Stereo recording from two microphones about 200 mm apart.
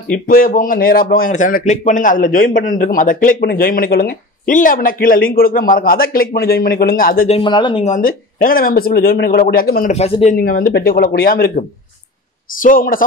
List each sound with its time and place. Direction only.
0.1 s speech: 45° left (ahead or behind)
7.2 s speech: 25° left (ahead or behind)
7.9 s speech: 45° left (ahead or behind)
9.9 s speech: 30° left (ahead or behind)
10.3 s speech: 50° left (ahead or behind)
12.6 s speech: 45° left (ahead or behind)